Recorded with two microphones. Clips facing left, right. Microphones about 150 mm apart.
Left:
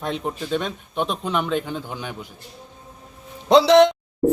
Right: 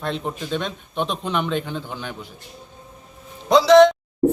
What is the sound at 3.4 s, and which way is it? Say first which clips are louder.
Speech: right 1 dB; 30° left (ahead or behind).